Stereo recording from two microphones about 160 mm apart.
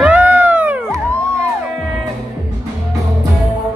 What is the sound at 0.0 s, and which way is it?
Cat, 10° right (ahead or behind).